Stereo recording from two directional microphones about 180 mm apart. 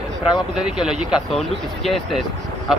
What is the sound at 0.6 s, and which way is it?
Speech, 5° right (ahead or behind).